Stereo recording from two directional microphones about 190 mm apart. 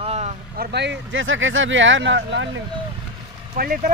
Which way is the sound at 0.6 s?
65° right (ahead or behind).